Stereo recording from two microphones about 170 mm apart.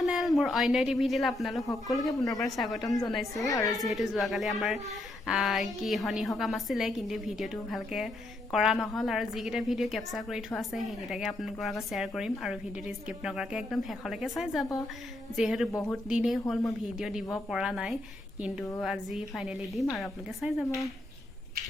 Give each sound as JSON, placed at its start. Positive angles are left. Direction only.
{"t": 0.0, "sound": "a woman's voice", "side_deg": 0}
{"t": 3.4, "sound": "a woman's voice", "side_deg": 20}
{"t": 3.7, "sound": "a woman's voice", "side_deg": 0}